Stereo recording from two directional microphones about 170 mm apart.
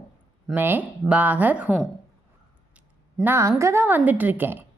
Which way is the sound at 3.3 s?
15° right (ahead or behind).